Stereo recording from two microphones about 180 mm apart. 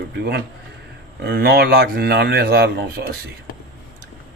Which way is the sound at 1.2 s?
60° right (ahead or behind).